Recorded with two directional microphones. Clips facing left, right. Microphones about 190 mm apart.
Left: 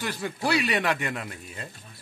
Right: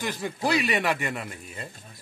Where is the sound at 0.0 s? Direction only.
15° right (ahead or behind).